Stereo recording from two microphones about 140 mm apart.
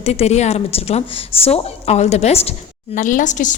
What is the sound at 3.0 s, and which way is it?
Speech, 65° left (ahead or behind).